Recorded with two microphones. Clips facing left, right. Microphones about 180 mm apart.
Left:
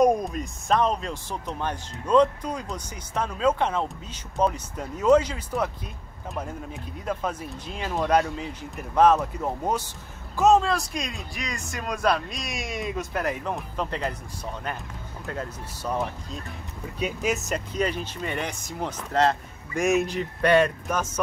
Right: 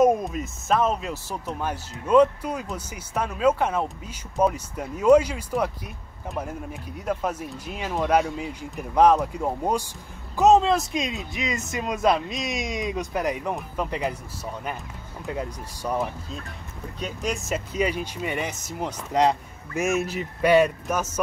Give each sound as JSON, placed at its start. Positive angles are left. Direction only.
{"t": 0.0, "sound": "speech", "side_deg": 0}
{"t": 7.1, "sound": "speech", "side_deg": -10}
{"t": 17.0, "sound": "speech", "side_deg": 5}